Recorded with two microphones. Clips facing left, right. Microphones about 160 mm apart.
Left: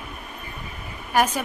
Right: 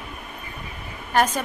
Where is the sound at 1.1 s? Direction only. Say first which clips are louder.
Even; 10° left (ahead or behind).